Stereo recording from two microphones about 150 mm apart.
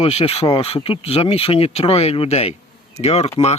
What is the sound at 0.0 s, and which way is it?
Speech, 40° left (ahead or behind).